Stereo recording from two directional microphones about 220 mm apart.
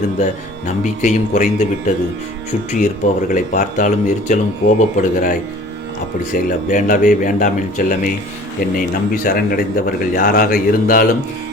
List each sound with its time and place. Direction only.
0.2 s speech: 35° left (ahead or behind)
2.7 s speech: 35° left (ahead or behind)
9.2 s speech: 40° left (ahead or behind)